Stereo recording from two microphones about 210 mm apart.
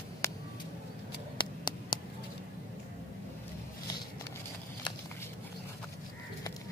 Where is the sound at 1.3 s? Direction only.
20° left (ahead or behind).